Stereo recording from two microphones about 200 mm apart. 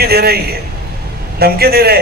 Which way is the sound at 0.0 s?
50° right (ahead or behind).